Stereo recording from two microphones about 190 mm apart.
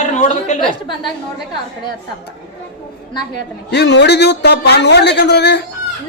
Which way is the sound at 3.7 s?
65° left (ahead or behind).